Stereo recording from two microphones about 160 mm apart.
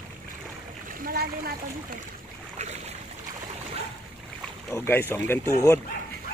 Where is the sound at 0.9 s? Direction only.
65° right (ahead or behind).